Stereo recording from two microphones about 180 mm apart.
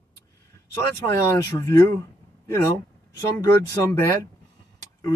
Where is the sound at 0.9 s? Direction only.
15° left (ahead or behind).